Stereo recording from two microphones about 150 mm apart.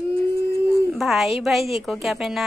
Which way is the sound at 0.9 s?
Centre (ahead or behind).